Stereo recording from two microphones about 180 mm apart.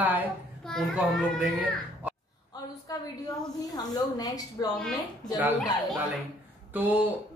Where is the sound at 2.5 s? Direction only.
20° left (ahead or behind).